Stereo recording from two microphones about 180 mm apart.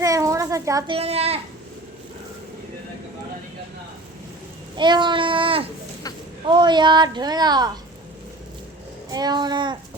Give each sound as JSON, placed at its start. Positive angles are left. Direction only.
{"t": 0.0, "sound": "a sound", "side_deg": -20}
{"t": 0.9, "sound": "a child's voice", "side_deg": -35}
{"t": 4.8, "sound": "speech", "side_deg": -25}
{"t": 9.1, "sound": "speech", "side_deg": -25}